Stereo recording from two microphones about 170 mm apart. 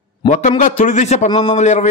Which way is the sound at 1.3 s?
25° left (ahead or behind).